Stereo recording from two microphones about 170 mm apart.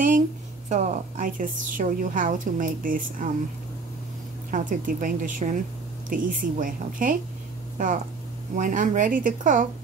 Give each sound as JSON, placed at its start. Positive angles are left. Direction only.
{"t": 0.7, "sound": "a woman's voice", "side_deg": -45}
{"t": 4.5, "sound": "a woman's voice", "side_deg": -50}